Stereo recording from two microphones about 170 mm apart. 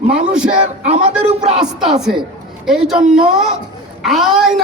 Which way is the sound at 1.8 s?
5° right (ahead or behind).